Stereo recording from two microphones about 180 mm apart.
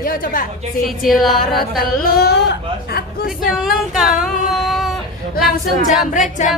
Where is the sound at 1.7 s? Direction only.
55° left (ahead or behind).